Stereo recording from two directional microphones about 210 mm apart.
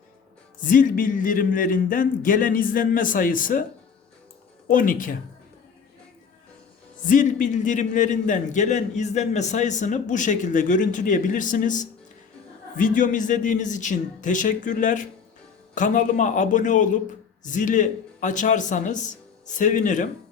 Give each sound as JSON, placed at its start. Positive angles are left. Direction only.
{"t": 0.6, "sound": "a man's voice", "side_deg": 40}
{"t": 4.7, "sound": "a man's voice", "side_deg": 40}
{"t": 7.1, "sound": "a man's voice", "side_deg": 40}